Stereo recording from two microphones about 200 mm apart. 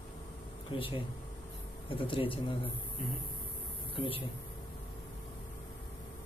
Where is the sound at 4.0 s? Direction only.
25° left (ahead or behind).